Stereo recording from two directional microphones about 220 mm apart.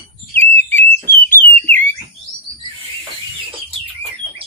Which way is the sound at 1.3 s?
10° left (ahead or behind).